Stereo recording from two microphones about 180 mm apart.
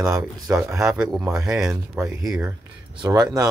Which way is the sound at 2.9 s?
20° right (ahead or behind).